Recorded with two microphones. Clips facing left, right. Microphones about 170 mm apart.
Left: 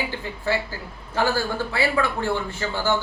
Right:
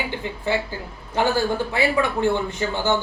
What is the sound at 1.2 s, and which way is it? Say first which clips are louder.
A man's voice: right 2 dB; 20° right (ahead or behind).